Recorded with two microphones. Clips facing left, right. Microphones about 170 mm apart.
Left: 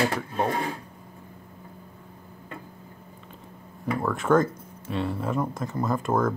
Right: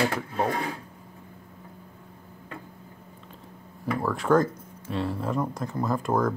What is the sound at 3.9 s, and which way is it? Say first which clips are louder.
Speech: even; centre (ahead or behind).